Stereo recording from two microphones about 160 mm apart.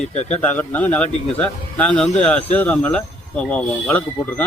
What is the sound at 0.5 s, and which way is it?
Speech, 10° left (ahead or behind).